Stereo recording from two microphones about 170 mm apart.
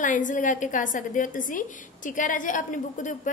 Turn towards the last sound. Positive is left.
turn(degrees=50)  # may be behind; listen again after turning